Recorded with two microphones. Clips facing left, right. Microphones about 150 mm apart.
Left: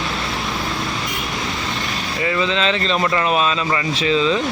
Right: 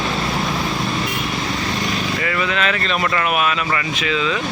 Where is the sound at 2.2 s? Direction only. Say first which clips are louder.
Left 5 dB; 25° left (ahead or behind).